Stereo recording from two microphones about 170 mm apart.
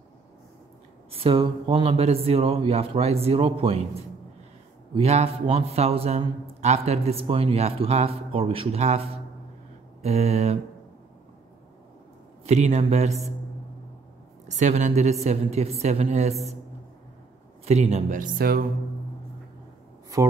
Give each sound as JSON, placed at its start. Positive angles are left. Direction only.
{"t": 1.1, "sound": "a man's voice", "side_deg": -30}
{"t": 12.4, "sound": "a man's voice", "side_deg": -40}
{"t": 14.6, "sound": "a man's voice", "side_deg": -45}
{"t": 17.6, "sound": "speech", "side_deg": -40}